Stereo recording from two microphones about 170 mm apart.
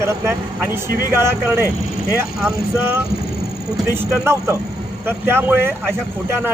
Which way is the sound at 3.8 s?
15° right (ahead or behind).